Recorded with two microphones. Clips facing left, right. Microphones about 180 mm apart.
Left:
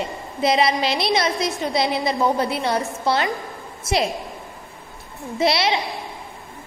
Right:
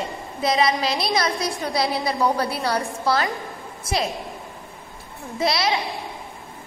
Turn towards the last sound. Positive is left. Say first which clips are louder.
# left 2 dB
turn(degrees=25)  # may be behind; listen again after turning